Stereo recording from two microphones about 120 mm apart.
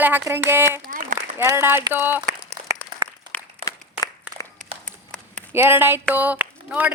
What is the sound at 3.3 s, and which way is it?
Applause, 15° left (ahead or behind).